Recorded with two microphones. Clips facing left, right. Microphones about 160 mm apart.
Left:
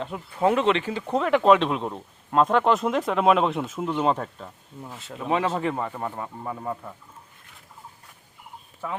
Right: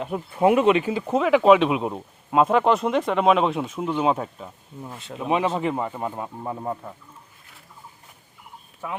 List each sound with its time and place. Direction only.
0.0 s speech: 15° right (ahead or behind); by 5.1 s centre (ahead or behind)
5.1 s speech: 15° right (ahead or behind)